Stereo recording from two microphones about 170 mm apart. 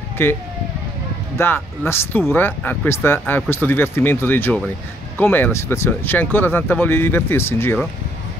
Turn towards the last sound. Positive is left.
turn(degrees=15)  # may be behind; listen again after turning